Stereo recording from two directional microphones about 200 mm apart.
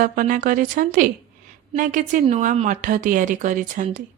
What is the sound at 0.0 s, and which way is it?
A woman's voice, 40° right (ahead or behind).